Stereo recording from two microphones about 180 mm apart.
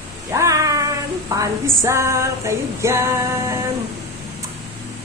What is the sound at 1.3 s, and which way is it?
Female singing, 15° right (ahead or behind).